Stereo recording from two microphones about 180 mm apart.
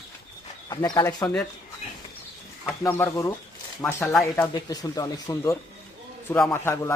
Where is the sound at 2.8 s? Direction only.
15° left (ahead or behind).